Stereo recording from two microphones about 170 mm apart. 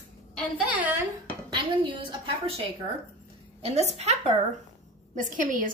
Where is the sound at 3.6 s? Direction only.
35° right (ahead or behind).